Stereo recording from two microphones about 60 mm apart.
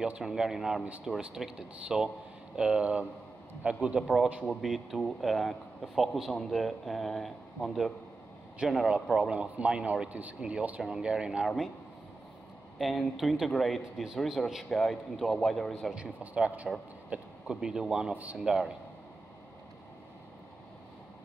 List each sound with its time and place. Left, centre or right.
0.2 s speech: centre
4.5 s a man's voice: centre
9.3 s a man's voice: centre
11.4 s a man's voice: centre
12.7 s a man's voice: centre
15.9 s a man's voice: centre
18.1 s a man's voice: right
18.4 s speech: centre